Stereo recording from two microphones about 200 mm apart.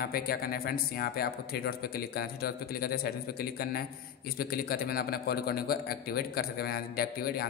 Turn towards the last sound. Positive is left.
turn(degrees=50)  # may be behind; listen again after turning